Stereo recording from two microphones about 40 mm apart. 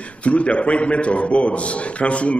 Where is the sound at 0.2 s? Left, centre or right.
Left.